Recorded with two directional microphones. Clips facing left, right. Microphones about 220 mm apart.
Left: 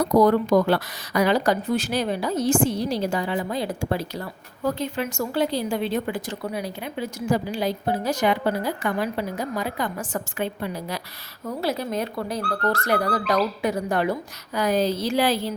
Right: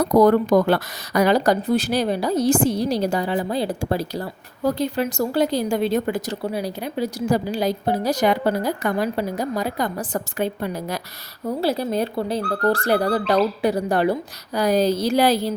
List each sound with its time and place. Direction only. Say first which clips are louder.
0.2 s a woman's voice: right 3 dB; 50° right (ahead or behind)
11.4 s a woman's voice: right 4 dB; 30° right (ahead or behind)